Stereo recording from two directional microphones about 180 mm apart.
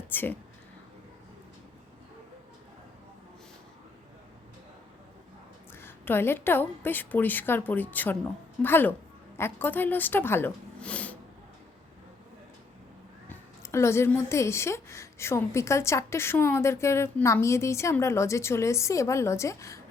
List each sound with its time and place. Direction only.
0.1 s a woman's voice: 10° left (ahead or behind)
5.7 s a woman's voice: 10° left (ahead or behind)
13.2 s a woman's voice: 15° left (ahead or behind)